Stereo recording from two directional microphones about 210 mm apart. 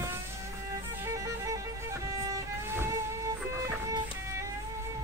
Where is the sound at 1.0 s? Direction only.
15° right (ahead or behind).